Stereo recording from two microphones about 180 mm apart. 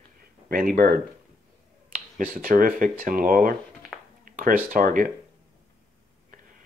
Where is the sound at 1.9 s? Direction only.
50° right (ahead or behind).